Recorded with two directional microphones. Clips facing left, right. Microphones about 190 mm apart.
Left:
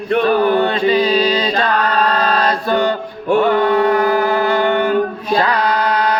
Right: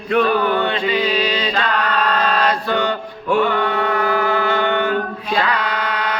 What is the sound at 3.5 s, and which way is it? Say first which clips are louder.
Music: left 6 dB; 35° left (ahead or behind).